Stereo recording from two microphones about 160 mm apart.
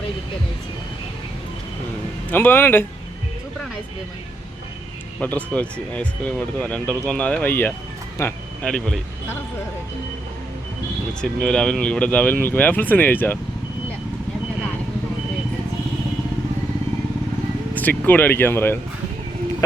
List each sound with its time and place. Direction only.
2.3 s speech: 10° left (ahead or behind)
5.2 s speech: 10° left (ahead or behind)
8.6 s speech: 5° left (ahead or behind)
11.2 s speech: 5° left (ahead or behind)
17.7 s speech: 10° left (ahead or behind)